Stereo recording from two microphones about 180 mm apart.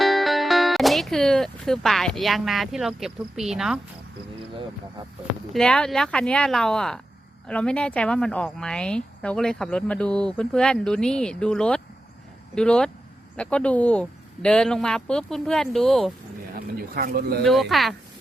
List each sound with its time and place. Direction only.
0.0 s speech: centre (ahead or behind)
5.5 s a woman's voice: 5° left (ahead or behind)
16.7 s speech: 55° right (ahead or behind)
17.4 s a woman's voice: centre (ahead or behind)